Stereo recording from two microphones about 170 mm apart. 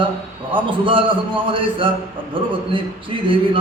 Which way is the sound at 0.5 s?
30° right (ahead or behind).